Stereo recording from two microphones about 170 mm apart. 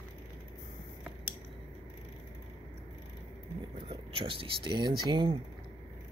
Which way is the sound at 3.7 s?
30° right (ahead or behind).